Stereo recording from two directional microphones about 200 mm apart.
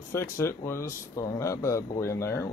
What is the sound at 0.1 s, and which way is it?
Speech, 15° left (ahead or behind).